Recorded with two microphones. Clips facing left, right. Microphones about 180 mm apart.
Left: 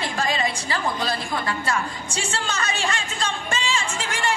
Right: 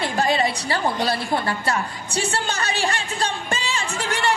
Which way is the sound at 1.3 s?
30° right (ahead or behind).